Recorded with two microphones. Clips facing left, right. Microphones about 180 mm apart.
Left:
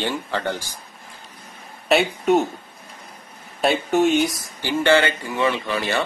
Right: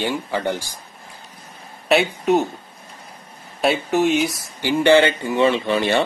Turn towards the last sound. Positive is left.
turn(degrees=-25)  # may be behind; listen again after turning